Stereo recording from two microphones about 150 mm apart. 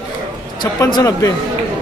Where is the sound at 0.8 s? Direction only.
20° left (ahead or behind).